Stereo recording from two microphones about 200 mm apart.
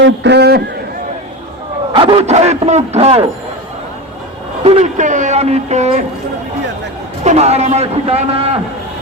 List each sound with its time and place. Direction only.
0.0 s a man's voice: 60° right (ahead or behind)
1.9 s a man's voice: 25° right (ahead or behind)
4.6 s a man's voice: 30° right (ahead or behind)
7.3 s a man's voice: 35° right (ahead or behind)